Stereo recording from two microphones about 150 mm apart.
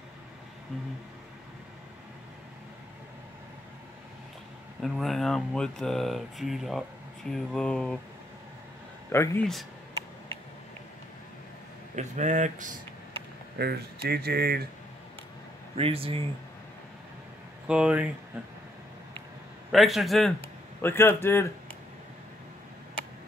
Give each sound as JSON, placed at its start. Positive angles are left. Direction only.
{"t": 4.8, "sound": "speech", "side_deg": 0}
{"t": 9.1, "sound": "a man's voice", "side_deg": 15}
{"t": 11.9, "sound": "speech", "side_deg": -55}
{"t": 13.6, "sound": "speech", "side_deg": -90}
{"t": 15.7, "sound": "speech", "side_deg": -40}
{"t": 17.6, "sound": "speech", "side_deg": -5}
{"t": 19.7, "sound": "speech", "side_deg": 0}
{"t": 20.8, "sound": "a man's voice", "side_deg": 15}